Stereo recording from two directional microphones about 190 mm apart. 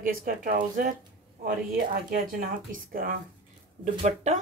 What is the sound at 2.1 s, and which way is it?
Speech, 45° right (ahead or behind).